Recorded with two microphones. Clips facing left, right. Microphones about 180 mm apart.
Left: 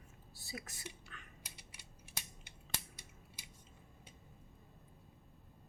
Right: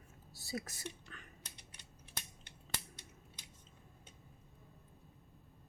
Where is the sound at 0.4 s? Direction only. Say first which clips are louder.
Right 6 dB; 40° right (ahead or behind).